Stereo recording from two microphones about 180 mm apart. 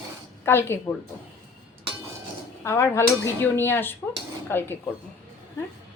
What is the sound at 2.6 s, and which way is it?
Speech, 15° left (ahead or behind).